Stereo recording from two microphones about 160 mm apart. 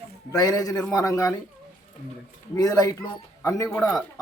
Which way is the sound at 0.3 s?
25° left (ahead or behind).